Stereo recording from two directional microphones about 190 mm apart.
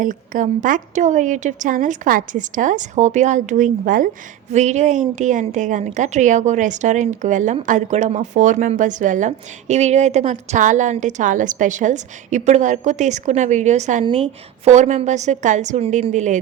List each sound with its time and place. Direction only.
0.0 s a woman's voice: 45° right (ahead or behind)